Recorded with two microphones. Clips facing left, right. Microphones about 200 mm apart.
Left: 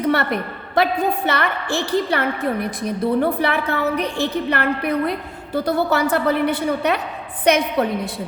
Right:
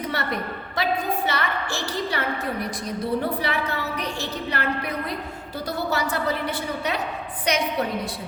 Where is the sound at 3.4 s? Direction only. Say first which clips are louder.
Left 6 dB; 55° left (ahead or behind).